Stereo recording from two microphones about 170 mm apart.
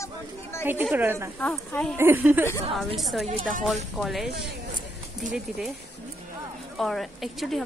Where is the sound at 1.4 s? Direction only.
5° left (ahead or behind).